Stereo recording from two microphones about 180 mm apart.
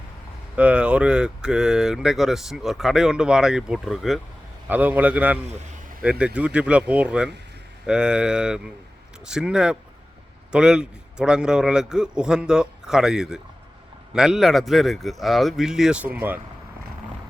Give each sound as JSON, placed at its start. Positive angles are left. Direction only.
{"t": 0.5, "sound": "speech", "side_deg": -5}